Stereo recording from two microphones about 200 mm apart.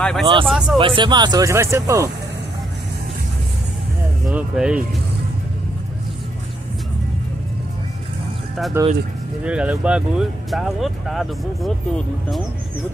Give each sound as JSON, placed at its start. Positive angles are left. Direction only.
{"t": 0.0, "sound": "speech", "side_deg": 5}
{"t": 0.7, "sound": "speech", "side_deg": -25}
{"t": 4.3, "sound": "speech", "side_deg": -5}
{"t": 8.8, "sound": "speech", "side_deg": -15}